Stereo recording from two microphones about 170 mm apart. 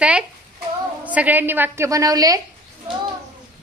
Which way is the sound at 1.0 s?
10° right (ahead or behind).